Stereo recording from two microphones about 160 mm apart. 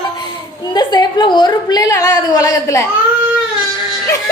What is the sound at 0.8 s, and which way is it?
A woman's voice, 25° left (ahead or behind).